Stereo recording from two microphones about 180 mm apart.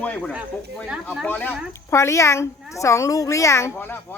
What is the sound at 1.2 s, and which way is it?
Speech, 10° left (ahead or behind).